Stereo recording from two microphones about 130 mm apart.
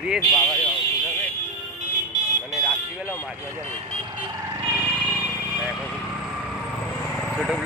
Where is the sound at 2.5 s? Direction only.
Centre (ahead or behind).